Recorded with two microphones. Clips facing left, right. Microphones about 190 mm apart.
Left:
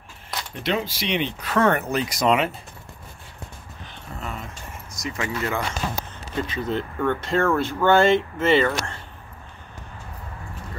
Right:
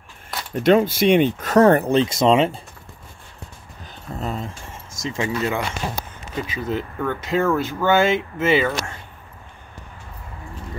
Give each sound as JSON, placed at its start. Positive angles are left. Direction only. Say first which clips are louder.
{"t": 0.6, "sound": "speech", "louder": "right 11 dB", "side_deg": -50}
{"t": 4.2, "sound": "speech", "louder": "right 6 dB", "side_deg": -30}
{"t": 6.4, "sound": "speech", "louder": "right 1 dB", "side_deg": -5}